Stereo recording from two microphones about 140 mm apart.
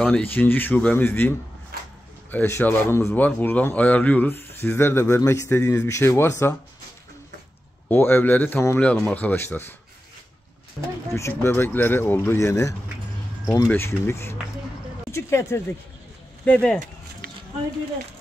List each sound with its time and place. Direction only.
0.0 s speech: 10° left (ahead or behind)
1.7 s a sound: 90° right
2.3 s speech: 15° left (ahead or behind)
7.9 s speech: 15° left (ahead or behind)
11.1 s speech: 20° left (ahead or behind)
15.0 s a sound: 20° left (ahead or behind)
16.4 s speech: 10° left (ahead or behind)